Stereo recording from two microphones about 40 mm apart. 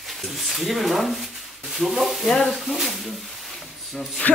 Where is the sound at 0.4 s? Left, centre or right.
Centre.